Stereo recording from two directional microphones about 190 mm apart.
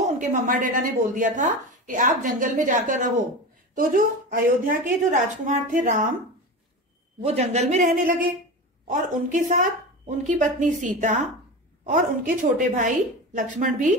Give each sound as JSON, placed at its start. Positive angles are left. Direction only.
{"t": 0.0, "sound": "a woman's voice", "side_deg": -40}
{"t": 7.2, "sound": "speech", "side_deg": -35}
{"t": 8.0, "sound": "a woman's voice", "side_deg": -45}